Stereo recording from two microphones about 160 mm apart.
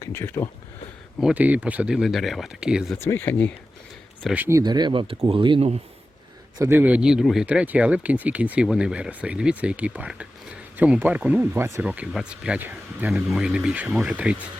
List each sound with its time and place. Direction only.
0.0 s speech: 15° left (ahead or behind)
1.2 s speech: 10° right (ahead or behind)
3.0 s speech: 15° left (ahead or behind)
4.4 s speech: 20° right (ahead or behind); by 5.8 s 40° right (ahead or behind)
6.6 s speech: 15° right (ahead or behind)